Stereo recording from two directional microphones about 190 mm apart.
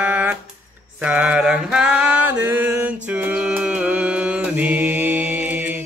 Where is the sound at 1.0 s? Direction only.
5° right (ahead or behind).